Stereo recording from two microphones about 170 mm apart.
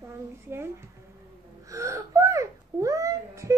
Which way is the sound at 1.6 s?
20° right (ahead or behind).